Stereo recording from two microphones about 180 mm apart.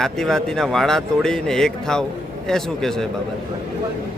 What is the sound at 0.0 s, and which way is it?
A man's voice, 5° left (ahead or behind).